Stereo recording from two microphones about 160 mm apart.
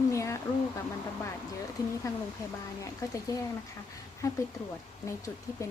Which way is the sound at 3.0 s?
20° left (ahead or behind).